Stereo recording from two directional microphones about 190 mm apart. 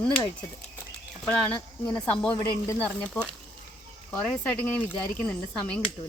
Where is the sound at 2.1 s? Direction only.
5° left (ahead or behind).